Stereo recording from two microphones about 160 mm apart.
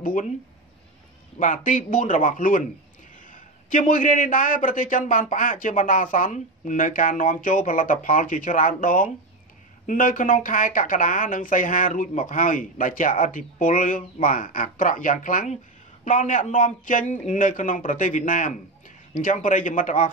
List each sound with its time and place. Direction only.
0.0 s a man's voice: 55° left (ahead or behind)
1.4 s a man's voice: 55° left (ahead or behind)